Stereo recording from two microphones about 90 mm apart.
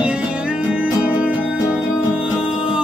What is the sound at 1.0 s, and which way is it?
Music, 15° right (ahead or behind).